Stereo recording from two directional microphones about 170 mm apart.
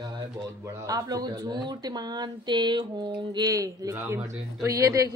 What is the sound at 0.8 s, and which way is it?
A man's voice, 20° right (ahead or behind).